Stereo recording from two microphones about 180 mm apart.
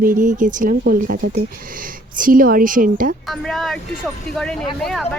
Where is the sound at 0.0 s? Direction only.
50° right (ahead or behind).